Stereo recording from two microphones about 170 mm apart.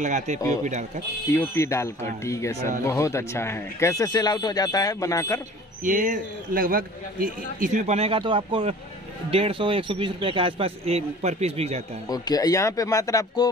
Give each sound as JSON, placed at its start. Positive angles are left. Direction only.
{"t": 0.0, "sound": "a man's voice", "side_deg": -45}
{"t": 1.3, "sound": "speech", "side_deg": 15}
{"t": 5.9, "sound": "a man's voice", "side_deg": -50}
{"t": 12.1, "sound": "speech", "side_deg": 20}